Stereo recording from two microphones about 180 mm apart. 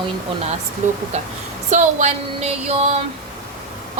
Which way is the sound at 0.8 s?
45° right (ahead or behind).